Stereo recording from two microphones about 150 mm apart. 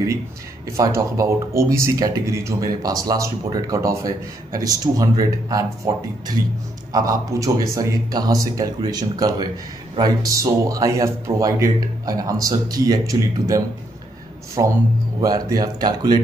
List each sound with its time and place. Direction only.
0.7 s speech: 20° right (ahead or behind)
6.9 s speech: 25° right (ahead or behind)